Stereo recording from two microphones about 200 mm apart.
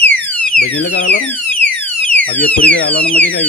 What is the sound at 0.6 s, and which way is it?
Speech, 60° left (ahead or behind).